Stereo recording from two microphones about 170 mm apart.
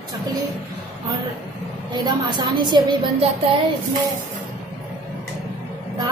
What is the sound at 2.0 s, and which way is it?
Speech, 25° right (ahead or behind).